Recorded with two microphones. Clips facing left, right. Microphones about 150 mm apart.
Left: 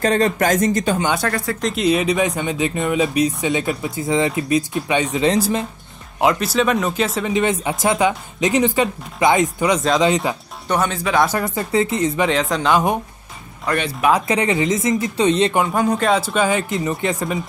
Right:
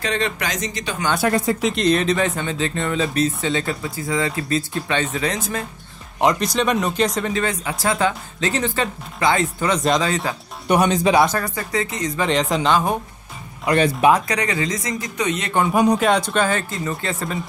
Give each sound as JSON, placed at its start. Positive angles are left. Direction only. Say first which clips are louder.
{"t": 0.0, "sound": "speech", "louder": "left 7 dB", "side_deg": 45}
{"t": 1.3, "sound": "speech", "louder": "right 4 dB", "side_deg": -20}
{"t": 1.6, "sound": "speech", "louder": "even", "side_deg": 5}
{"t": 5.2, "sound": "speech", "louder": "left 7 dB", "side_deg": 30}
{"t": 6.1, "sound": "speech", "louder": "left 1 dB", "side_deg": 5}
{"t": 7.3, "sound": "speech", "louder": "left 4 dB", "side_deg": 20}
{"t": 10.7, "sound": "speech", "louder": "right 3 dB", "side_deg": -15}
{"t": 11.4, "sound": "speech", "louder": "left 5 dB", "side_deg": 25}
{"t": 12.3, "sound": "speech", "louder": "even", "side_deg": 0}
{"t": 13.7, "sound": "speech", "louder": "right 3 dB", "side_deg": -15}
{"t": 14.2, "sound": "speech", "louder": "left 4 dB", "side_deg": 25}
{"t": 15.7, "sound": "speech", "louder": "right 2 dB", "side_deg": -15}
{"t": 16.0, "sound": "speech", "louder": "left 1 dB", "side_deg": 5}